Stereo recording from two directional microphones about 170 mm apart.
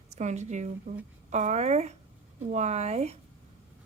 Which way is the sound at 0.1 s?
40° right (ahead or behind).